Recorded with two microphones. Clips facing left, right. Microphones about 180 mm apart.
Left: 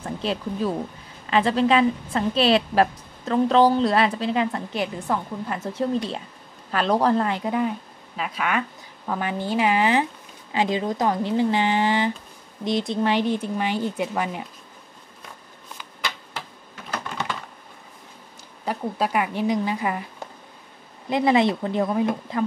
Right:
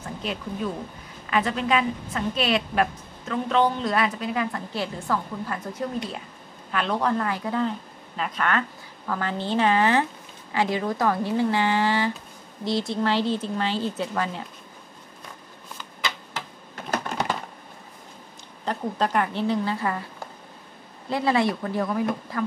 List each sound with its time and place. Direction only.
0.2 s a woman's voice: 35° left (ahead or behind)
6.7 s a woman's voice: 35° left (ahead or behind); by 7.7 s 15° left (ahead or behind)
8.2 s a woman's voice: 5° left (ahead or behind)
16.9 s typing: 40° right (ahead or behind)
18.7 s a woman's voice: 10° left (ahead or behind)
21.1 s a woman's voice: 20° left (ahead or behind)